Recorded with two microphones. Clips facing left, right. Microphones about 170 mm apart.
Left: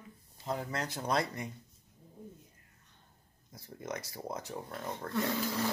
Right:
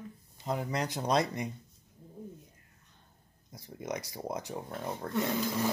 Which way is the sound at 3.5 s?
15° right (ahead or behind).